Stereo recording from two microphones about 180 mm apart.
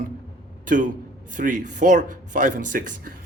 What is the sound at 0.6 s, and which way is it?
A man's voice, 45° right (ahead or behind).